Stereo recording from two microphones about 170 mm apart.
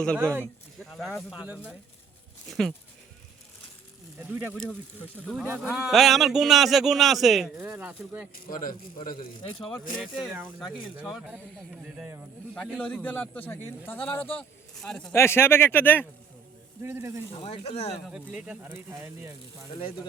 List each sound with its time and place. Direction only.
0.0 s a man's voice: 5° left (ahead or behind)
4.2 s speech: 10° right (ahead or behind)
4.5 s a man's voice: 5° left (ahead or behind)
8.4 s speech: 55° left (ahead or behind)
9.6 s a man's voice: 5° left (ahead or behind)
12.8 s a man's voice: 10° left (ahead or behind)
15.1 s a man's voice: 15° left (ahead or behind)
16.8 s speech: 15° right (ahead or behind)
17.3 s speech: 35° left (ahead or behind)
18.0 s speech: 5° right (ahead or behind)